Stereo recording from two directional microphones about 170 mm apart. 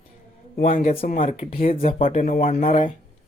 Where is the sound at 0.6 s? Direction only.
50° left (ahead or behind).